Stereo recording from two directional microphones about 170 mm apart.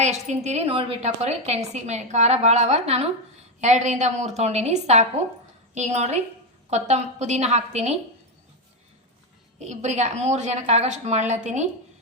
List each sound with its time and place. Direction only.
0.0 s a woman's voice: 40° right (ahead or behind)
9.6 s a woman's voice: 40° right (ahead or behind)